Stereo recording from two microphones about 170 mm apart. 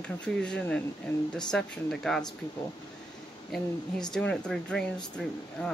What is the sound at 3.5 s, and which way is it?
Speech, centre (ahead or behind).